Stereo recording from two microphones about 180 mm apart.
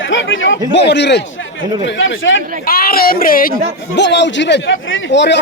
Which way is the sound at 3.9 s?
75° left (ahead or behind).